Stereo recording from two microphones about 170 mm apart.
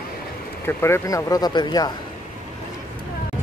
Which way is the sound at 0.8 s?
15° left (ahead or behind).